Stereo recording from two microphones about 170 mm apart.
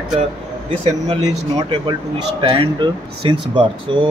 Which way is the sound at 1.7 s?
30° right (ahead or behind).